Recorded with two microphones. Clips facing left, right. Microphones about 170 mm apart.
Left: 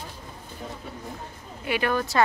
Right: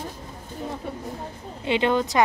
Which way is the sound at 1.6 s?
20° right (ahead or behind).